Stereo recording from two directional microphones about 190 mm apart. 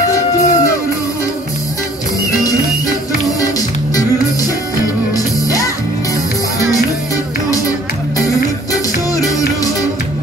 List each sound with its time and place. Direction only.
0.1 s music: 15° left (ahead or behind)
2.4 s music: 20° left (ahead or behind)
8.7 s music: 20° left (ahead or behind)